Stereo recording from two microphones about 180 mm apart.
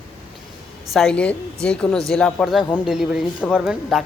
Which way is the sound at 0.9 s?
5° left (ahead or behind).